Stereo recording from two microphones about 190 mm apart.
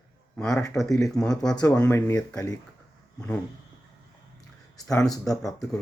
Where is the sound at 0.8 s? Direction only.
15° left (ahead or behind).